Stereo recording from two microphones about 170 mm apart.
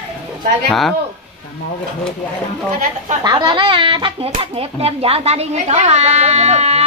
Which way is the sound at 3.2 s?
25° right (ahead or behind).